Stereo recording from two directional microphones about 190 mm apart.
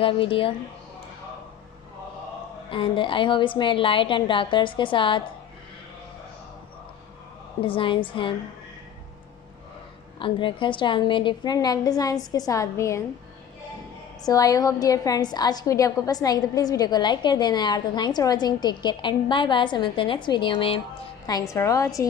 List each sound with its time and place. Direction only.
0.0 s a woman's voice: 30° left (ahead or behind)
2.7 s a woman's voice: 25° left (ahead or behind)
7.6 s a woman's voice: 25° left (ahead or behind)
10.1 s a woman's voice: 25° left (ahead or behind)
14.2 s a woman's voice: 20° left (ahead or behind)
21.3 s a woman's voice: 15° left (ahead or behind)